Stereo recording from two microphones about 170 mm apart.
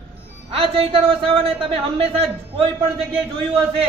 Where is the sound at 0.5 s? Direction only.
35° right (ahead or behind).